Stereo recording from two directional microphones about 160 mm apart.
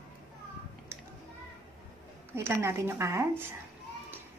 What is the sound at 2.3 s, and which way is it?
A woman's voice, 15° right (ahead or behind).